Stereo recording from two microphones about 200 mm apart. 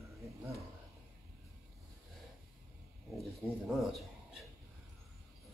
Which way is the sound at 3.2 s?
Centre (ahead or behind).